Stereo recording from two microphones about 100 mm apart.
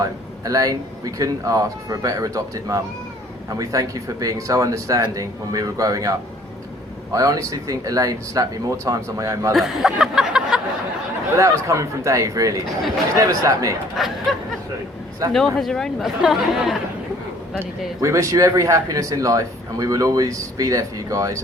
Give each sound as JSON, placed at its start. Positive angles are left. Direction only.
{"t": 0.0, "sound": "speech", "side_deg": -35}
{"t": 9.5, "sound": "speech", "side_deg": 0}
{"t": 11.3, "sound": "speech", "side_deg": -30}
{"t": 14.0, "sound": "speech", "side_deg": 0}
{"t": 15.3, "sound": "speech", "side_deg": 0}
{"t": 17.6, "sound": "speech", "side_deg": -30}